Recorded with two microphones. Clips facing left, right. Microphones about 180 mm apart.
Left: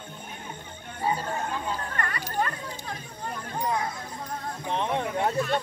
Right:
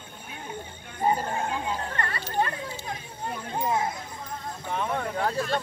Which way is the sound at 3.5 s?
25° right (ahead or behind).